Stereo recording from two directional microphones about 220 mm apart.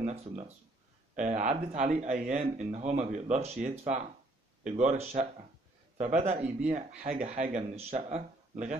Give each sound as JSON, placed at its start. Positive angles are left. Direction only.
{"t": 0.0, "sound": "speech", "side_deg": -30}